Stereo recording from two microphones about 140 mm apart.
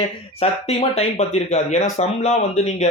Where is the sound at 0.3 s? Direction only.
45° left (ahead or behind).